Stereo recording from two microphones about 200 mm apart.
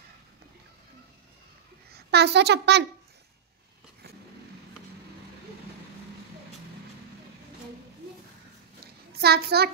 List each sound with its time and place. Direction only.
1.9 s a woman's voice: 55° right (ahead or behind)
9.2 s a child's voice: 55° right (ahead or behind)